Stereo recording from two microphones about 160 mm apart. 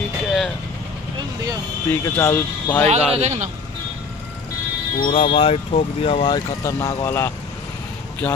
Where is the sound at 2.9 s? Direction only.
45° right (ahead or behind).